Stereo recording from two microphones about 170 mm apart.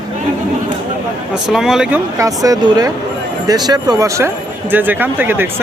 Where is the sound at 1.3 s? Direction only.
Centre (ahead or behind).